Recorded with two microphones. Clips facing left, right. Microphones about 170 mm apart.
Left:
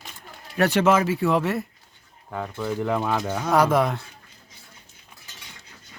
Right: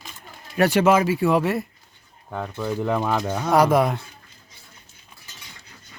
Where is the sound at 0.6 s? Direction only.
10° right (ahead or behind).